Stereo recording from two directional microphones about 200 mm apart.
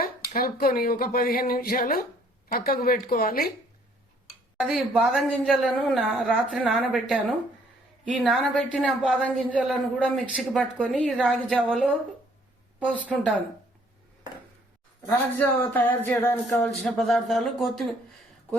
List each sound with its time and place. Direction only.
0.0 s speech: 45° left (ahead or behind)
4.6 s a woman's voice: centre (ahead or behind)
15.1 s a woman's voice: 10° left (ahead or behind)